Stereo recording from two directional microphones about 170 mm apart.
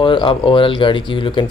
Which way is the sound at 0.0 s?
30° left (ahead or behind).